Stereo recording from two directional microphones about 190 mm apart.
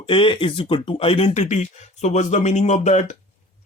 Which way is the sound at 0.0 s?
25° left (ahead or behind).